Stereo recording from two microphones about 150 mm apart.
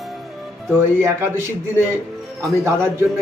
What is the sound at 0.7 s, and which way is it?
Speech, 15° right (ahead or behind).